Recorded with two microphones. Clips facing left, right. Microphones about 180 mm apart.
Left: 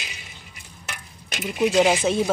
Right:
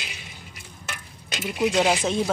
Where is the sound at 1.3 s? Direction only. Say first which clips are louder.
Left 2 dB; 25° left (ahead or behind).